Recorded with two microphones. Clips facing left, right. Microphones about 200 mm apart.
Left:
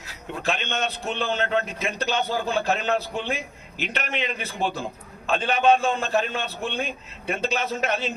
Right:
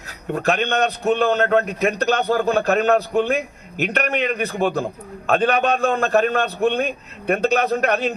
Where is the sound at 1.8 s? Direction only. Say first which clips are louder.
Right 7 dB; 60° right (ahead or behind).